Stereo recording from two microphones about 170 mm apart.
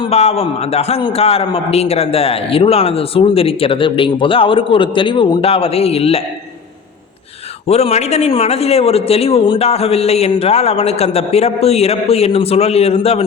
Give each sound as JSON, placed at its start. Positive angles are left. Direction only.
{"t": 0.0, "sound": "a man's voice", "side_deg": 35}
{"t": 7.7, "sound": "a man's voice", "side_deg": 40}